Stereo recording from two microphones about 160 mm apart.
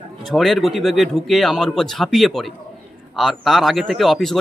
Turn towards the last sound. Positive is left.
turn(degrees=0)  # may be behind; listen again after turning